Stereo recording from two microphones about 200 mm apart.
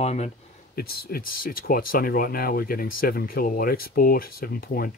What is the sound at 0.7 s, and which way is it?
Speech, 50° left (ahead or behind).